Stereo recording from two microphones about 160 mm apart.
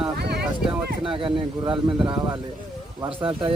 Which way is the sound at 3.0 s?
35° right (ahead or behind).